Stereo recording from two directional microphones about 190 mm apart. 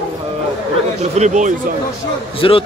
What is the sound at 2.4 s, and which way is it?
Speech, 25° left (ahead or behind).